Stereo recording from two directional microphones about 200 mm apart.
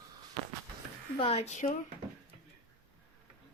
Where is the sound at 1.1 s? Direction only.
30° left (ahead or behind).